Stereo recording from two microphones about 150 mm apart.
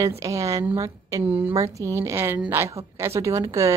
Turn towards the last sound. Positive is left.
turn(degrees=-20)  # may be behind; listen again after turning